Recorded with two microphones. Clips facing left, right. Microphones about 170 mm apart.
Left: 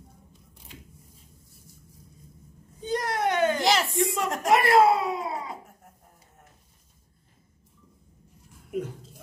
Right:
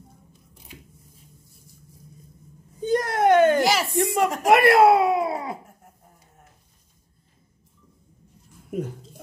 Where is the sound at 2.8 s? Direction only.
50° right (ahead or behind).